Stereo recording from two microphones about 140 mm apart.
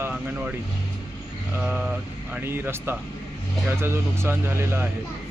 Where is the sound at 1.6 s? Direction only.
5° right (ahead or behind).